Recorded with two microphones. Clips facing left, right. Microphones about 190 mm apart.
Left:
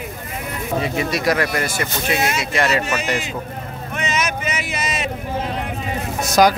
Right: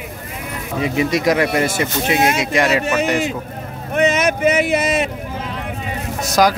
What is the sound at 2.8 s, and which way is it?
Speech, 55° right (ahead or behind).